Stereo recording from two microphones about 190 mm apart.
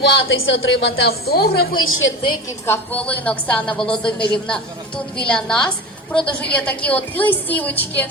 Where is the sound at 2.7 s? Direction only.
10° left (ahead or behind).